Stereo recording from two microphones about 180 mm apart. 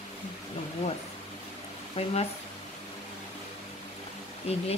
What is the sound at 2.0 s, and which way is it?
Speech, 35° left (ahead or behind).